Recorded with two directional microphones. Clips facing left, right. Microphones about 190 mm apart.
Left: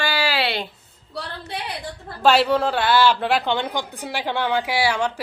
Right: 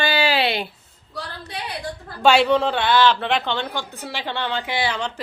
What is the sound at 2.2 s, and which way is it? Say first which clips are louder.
A woman's voice: right 1 dB; centre (ahead or behind).